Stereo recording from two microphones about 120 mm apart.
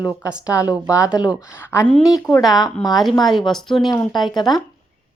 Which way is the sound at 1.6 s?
20° left (ahead or behind).